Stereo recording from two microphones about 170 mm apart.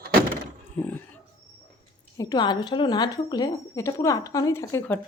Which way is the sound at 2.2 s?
25° left (ahead or behind).